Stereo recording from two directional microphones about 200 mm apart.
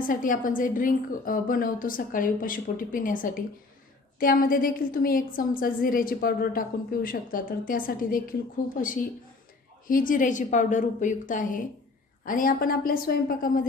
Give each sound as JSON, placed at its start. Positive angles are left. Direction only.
{"t": 0.1, "sound": "a woman's voice", "side_deg": 45}